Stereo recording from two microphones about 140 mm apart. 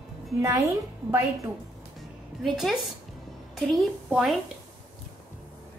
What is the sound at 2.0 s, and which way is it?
Music, centre (ahead or behind).